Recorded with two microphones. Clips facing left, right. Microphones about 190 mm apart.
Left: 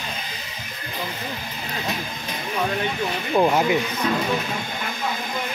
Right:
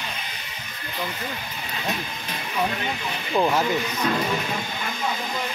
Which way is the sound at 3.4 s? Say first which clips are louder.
Left 3 dB; 15° left (ahead or behind).